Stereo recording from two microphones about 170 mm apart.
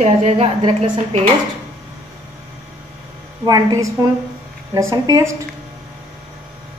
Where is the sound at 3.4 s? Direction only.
20° right (ahead or behind).